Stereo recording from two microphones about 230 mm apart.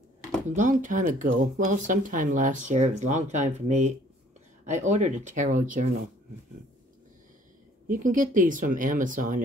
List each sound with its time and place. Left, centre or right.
0.5 s speech: right
7.9 s speech: right